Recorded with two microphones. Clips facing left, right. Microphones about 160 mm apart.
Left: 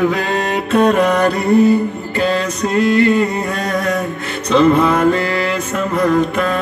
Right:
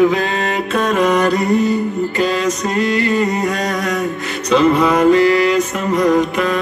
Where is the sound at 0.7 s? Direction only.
60° left (ahead or behind).